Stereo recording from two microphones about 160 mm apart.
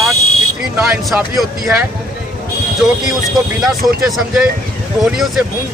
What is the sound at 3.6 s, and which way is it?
Speech, centre (ahead or behind).